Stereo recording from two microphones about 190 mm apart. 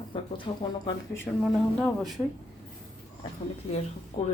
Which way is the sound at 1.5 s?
Centre (ahead or behind).